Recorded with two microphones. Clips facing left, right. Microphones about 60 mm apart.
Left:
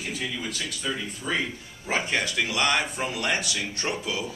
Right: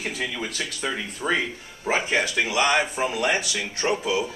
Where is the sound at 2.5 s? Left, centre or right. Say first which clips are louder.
Right 4 dB; centre.